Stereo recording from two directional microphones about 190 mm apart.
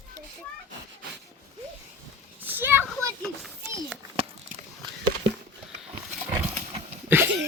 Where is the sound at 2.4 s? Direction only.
10° right (ahead or behind).